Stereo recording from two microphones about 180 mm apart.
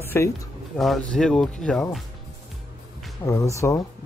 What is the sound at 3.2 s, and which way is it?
Speech, 15° left (ahead or behind).